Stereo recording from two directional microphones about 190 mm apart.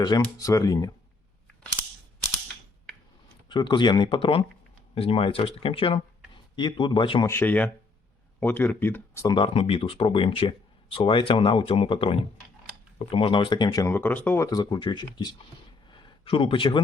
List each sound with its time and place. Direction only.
0.0 s speech: 20° left (ahead or behind)
3.5 s speech: 25° left (ahead or behind)
7.3 s speech: 10° left (ahead or behind)
15.9 s a sound: 25° left (ahead or behind)